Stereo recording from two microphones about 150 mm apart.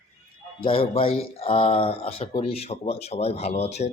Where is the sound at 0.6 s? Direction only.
35° left (ahead or behind).